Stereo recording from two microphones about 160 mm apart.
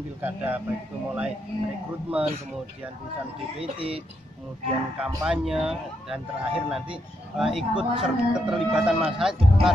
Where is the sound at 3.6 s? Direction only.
35° right (ahead or behind).